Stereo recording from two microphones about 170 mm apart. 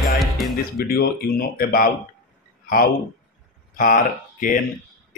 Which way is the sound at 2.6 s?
55° left (ahead or behind).